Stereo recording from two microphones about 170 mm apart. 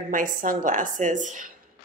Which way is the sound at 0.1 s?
50° right (ahead or behind).